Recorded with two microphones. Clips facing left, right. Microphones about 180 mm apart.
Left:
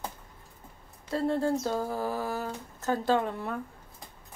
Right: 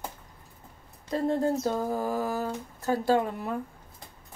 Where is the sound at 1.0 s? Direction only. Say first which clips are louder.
Right 1 dB; 15° right (ahead or behind).